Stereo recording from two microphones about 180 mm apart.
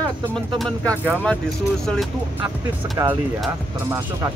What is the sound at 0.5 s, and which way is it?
Speech, 5° left (ahead or behind).